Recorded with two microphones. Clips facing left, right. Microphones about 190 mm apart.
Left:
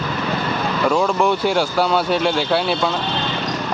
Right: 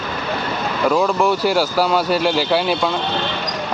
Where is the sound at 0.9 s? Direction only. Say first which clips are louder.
Right 1 dB; centre (ahead or behind).